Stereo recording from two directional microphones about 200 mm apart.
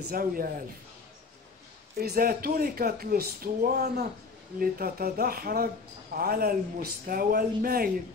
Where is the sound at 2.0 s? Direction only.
50° right (ahead or behind).